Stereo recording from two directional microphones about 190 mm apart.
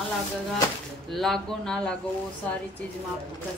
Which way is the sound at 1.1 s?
Centre (ahead or behind).